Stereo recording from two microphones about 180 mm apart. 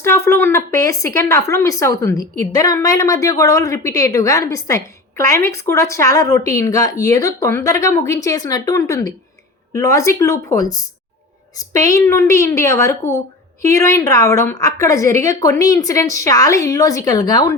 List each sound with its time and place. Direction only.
0.0 s speech: 15° left (ahead or behind)